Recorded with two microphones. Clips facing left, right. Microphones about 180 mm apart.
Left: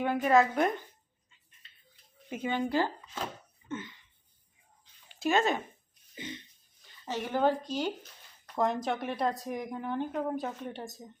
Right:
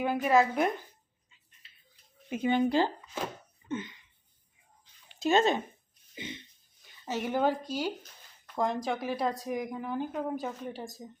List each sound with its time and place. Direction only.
0.0 s a woman's voice: 5° right (ahead or behind)
2.5 s speech: 20° right (ahead or behind)
3.7 s a sound: 20° right (ahead or behind)
5.2 s speech: 20° right (ahead or behind)
7.0 s a woman's voice: 10° right (ahead or behind)